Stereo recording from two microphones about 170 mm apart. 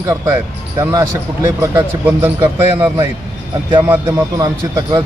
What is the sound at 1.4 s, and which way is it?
A man's voice, 15° right (ahead or behind).